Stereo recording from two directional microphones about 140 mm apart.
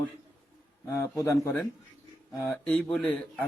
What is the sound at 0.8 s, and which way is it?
A man's voice, 20° left (ahead or behind).